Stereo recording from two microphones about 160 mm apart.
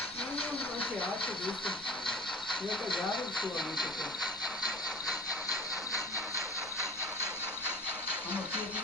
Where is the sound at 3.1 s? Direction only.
30° left (ahead or behind).